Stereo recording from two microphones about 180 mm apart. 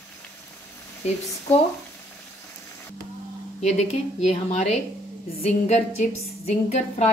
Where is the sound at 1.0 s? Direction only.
35° left (ahead or behind).